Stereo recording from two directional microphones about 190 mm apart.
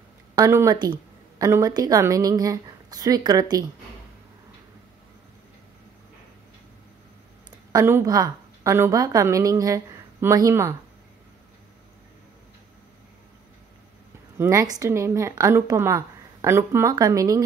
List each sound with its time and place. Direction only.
0.4 s a woman's voice: 15° right (ahead or behind)
7.7 s a woman's voice: 15° right (ahead or behind)
14.4 s a woman's voice: 15° right (ahead or behind)